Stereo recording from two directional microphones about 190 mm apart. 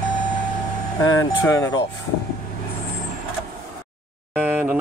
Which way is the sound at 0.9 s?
15° left (ahead or behind).